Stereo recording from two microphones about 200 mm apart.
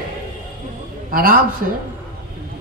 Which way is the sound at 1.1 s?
45° right (ahead or behind).